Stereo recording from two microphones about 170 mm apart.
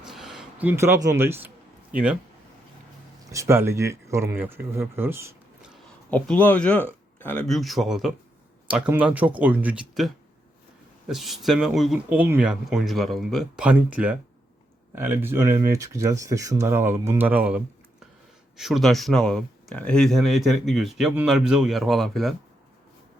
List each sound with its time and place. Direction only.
0.0 s a sound: centre (ahead or behind)
3.2 s speech: 15° right (ahead or behind)
6.1 s speech: 10° left (ahead or behind)
7.4 s speech: centre (ahead or behind)
11.1 s speech: centre (ahead or behind)